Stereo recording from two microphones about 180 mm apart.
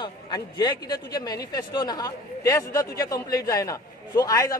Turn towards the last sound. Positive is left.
turn(degrees=20)  # may be behind; listen again after turning